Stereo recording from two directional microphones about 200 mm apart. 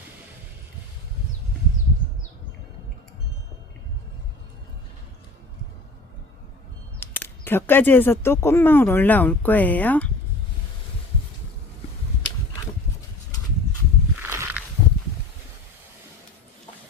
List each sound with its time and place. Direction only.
7.0 s speech: 10° left (ahead or behind)
14.2 s walk: 10° right (ahead or behind)